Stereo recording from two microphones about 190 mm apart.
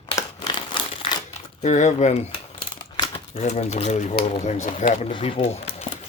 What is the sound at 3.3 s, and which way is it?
Speech, 35° left (ahead or behind).